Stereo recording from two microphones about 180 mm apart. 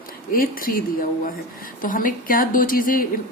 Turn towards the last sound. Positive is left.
turn(degrees=50)  # may be behind; listen again after turning